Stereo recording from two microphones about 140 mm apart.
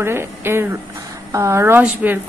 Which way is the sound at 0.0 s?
15° right (ahead or behind).